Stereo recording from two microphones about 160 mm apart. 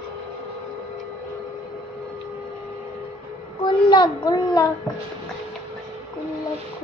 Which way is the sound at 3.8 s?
30° left (ahead or behind).